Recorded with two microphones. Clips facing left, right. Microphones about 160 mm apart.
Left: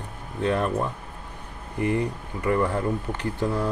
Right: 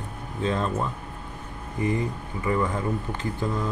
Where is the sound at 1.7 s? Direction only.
70° left (ahead or behind).